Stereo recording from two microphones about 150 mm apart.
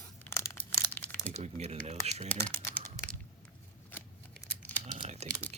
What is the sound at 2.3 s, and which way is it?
Typing, 15° left (ahead or behind).